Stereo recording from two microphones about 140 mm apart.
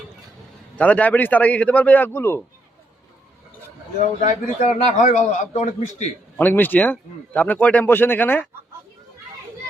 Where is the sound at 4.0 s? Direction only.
60° left (ahead or behind).